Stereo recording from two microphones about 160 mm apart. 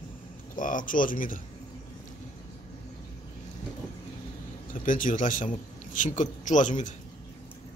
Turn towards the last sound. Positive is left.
turn(degrees=50)  # may be behind; listen again after turning